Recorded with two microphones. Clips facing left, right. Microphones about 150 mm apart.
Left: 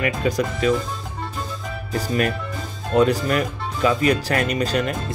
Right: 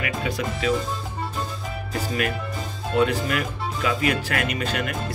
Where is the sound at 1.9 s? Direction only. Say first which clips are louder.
Left 4 dB; 40° left (ahead or behind).